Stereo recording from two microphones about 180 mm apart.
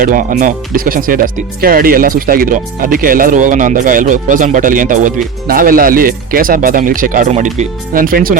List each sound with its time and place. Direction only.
0.0 s speech: 50° right (ahead or behind)